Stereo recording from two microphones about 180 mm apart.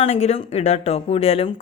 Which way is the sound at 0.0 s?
35° left (ahead or behind).